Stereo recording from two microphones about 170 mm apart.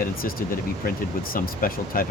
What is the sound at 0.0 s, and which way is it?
Speech, 60° left (ahead or behind).